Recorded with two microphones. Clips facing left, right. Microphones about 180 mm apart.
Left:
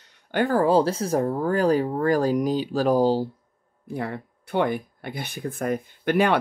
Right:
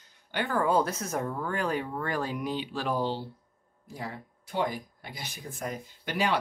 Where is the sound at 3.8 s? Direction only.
60° left (ahead or behind).